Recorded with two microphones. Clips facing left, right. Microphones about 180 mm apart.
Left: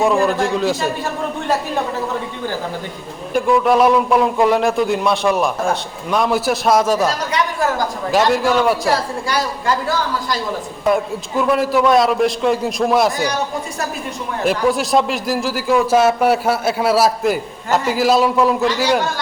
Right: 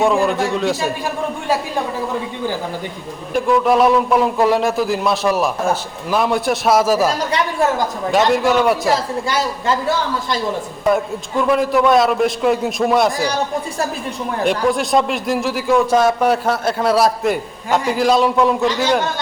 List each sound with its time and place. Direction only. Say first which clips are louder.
0.0 s a man's voice: even; centre (ahead or behind)
3.3 s a man's voice: even; centre (ahead or behind)
8.3 s a man's voice: right 1 dB; centre (ahead or behind)
9.3 s a man's voice: left 1 dB; 25° right (ahead or behind)
10.8 s a man's voice: even; centre (ahead or behind)
14.4 s a man's voice: left 1 dB; centre (ahead or behind)